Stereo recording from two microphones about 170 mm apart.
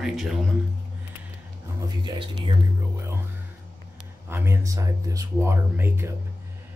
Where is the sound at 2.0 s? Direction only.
30° right (ahead or behind).